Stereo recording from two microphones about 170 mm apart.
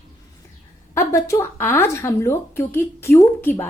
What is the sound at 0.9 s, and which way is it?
Speech, 15° left (ahead or behind).